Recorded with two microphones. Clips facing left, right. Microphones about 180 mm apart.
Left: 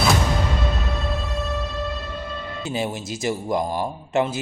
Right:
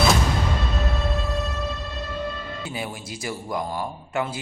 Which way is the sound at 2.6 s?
25° left (ahead or behind).